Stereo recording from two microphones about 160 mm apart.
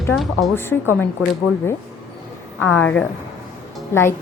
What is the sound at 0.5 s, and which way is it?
Speech, 15° left (ahead or behind).